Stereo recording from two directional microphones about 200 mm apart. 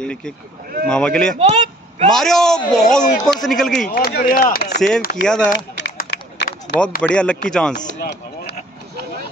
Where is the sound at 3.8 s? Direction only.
45° left (ahead or behind).